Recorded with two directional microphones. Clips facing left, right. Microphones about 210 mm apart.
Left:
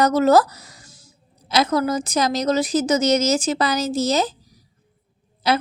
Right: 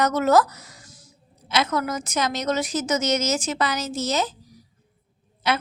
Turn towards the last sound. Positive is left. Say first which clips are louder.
# left 4 dB
turn(degrees=35)  # may be behind; listen again after turning